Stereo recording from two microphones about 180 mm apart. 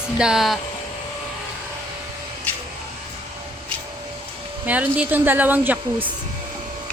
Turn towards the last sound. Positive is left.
turn(degrees=-10)  # may be behind; listen again after turning